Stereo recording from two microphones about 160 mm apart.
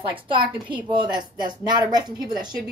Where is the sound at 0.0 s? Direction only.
30° right (ahead or behind).